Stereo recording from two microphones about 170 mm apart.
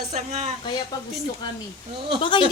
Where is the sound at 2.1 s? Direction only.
30° left (ahead or behind).